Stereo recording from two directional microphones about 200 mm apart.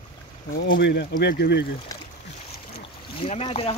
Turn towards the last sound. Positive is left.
turn(degrees=30)  # may be behind; listen again after turning